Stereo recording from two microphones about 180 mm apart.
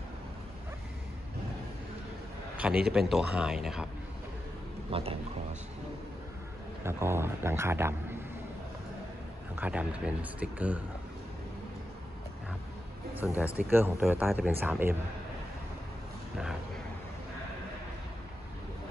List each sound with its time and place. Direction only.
2.5 s a man's voice: 5° right (ahead or behind)
4.9 s speech: 35° right (ahead or behind)
6.8 s speech: 15° right (ahead or behind)
9.6 s speech: 5° right (ahead or behind)
13.2 s a man's voice: 10° right (ahead or behind)
16.3 s speech: centre (ahead or behind)